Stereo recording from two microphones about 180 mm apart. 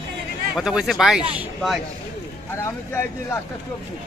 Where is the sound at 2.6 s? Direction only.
15° left (ahead or behind).